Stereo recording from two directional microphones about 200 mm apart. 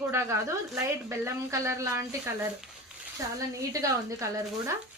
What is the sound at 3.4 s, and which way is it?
Speech, 15° right (ahead or behind).